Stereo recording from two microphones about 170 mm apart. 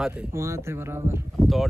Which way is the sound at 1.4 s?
Centre (ahead or behind).